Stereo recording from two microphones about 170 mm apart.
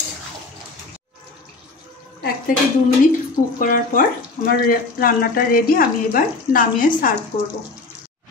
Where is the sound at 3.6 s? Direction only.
55° left (ahead or behind).